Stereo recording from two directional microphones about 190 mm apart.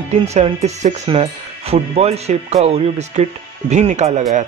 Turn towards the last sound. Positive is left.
turn(degrees=-35)  # may be behind; listen again after turning